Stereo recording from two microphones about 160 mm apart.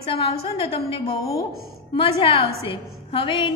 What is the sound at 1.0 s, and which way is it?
Speech, 20° left (ahead or behind).